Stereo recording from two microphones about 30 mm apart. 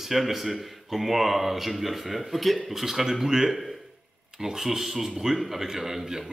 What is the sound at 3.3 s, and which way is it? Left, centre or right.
A man's voice, centre.